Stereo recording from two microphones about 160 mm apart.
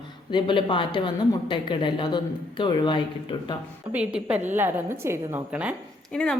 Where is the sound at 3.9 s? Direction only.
10° right (ahead or behind).